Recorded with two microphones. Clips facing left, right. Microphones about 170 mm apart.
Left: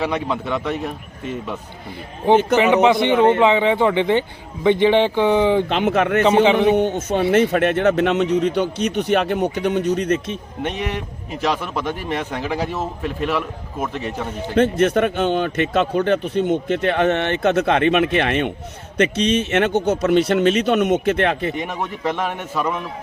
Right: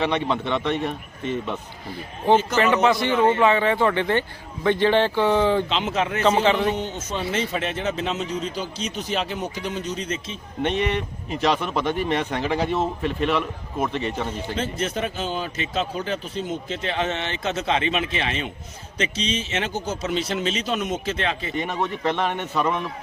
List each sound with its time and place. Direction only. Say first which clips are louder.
0.0 s speech: left 1 dB; 5° left (ahead or behind)
2.6 s a man's voice: left 5 dB; 15° left (ahead or behind)
5.6 s a man's voice: left 6 dB; 55° left (ahead or behind)
10.6 s speech: right 3 dB; 5° left (ahead or behind)
14.5 s a man's voice: left 14 dB; 60° left (ahead or behind)
21.5 s speech: even; 10° left (ahead or behind)